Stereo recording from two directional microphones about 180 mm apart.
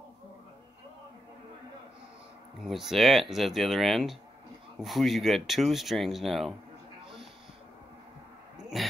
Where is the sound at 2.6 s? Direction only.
Centre (ahead or behind).